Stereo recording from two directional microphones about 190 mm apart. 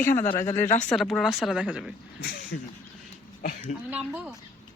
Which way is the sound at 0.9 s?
Centre (ahead or behind).